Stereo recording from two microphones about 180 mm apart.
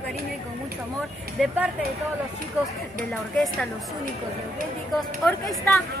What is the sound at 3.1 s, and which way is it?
Speech, centre (ahead or behind).